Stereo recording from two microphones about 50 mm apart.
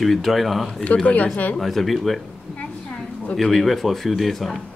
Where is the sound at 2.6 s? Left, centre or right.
Left.